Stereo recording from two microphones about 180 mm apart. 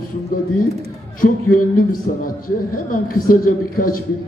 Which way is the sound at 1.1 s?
50° left (ahead or behind).